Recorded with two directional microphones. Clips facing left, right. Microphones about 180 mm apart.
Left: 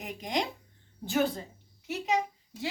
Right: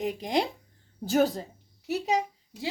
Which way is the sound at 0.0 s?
30° right (ahead or behind).